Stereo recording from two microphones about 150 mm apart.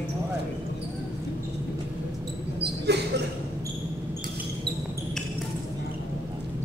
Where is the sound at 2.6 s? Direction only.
90° right.